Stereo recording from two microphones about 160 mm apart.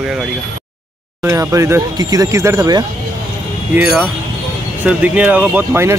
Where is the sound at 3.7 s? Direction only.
5° right (ahead or behind).